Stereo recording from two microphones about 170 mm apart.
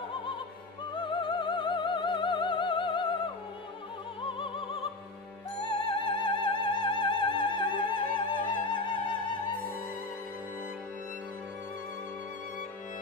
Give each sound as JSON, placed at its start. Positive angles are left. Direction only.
{"t": 0.9, "sound": "music", "side_deg": 30}
{"t": 5.7, "sound": "music", "side_deg": 30}